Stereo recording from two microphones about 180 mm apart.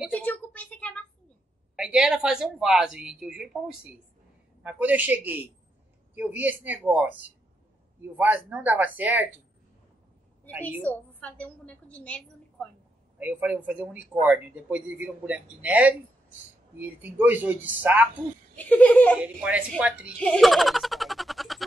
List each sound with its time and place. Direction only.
0.1 s a sound: 10° left (ahead or behind)
1.8 s a woman's voice: 5° right (ahead or behind)
10.8 s a woman's voice: 10° left (ahead or behind)
13.2 s speech: 10° right (ahead or behind)
18.6 s a woman's voice: 10° left (ahead or behind)
19.4 s speech: 5° right (ahead or behind)
20.2 s a sound: 5° left (ahead or behind)